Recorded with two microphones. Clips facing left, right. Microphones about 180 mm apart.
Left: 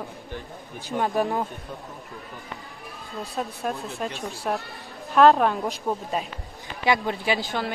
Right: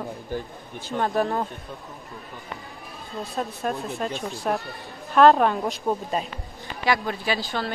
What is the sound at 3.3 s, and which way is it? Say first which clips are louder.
Speech: right 1 dB; centre (ahead or behind).